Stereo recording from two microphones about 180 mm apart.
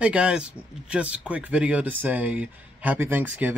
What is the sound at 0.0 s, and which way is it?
Speech, 5° right (ahead or behind).